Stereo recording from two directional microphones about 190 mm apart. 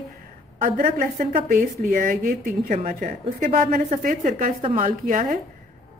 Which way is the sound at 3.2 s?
35° right (ahead or behind).